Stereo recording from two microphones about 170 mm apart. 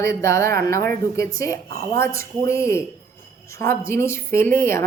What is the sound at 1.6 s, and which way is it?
Speech, 55° right (ahead or behind).